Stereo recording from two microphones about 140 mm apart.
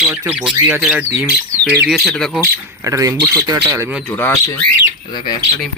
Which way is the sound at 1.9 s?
Centre (ahead or behind).